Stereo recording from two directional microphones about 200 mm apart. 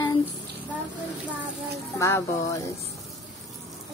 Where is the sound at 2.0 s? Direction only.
15° left (ahead or behind).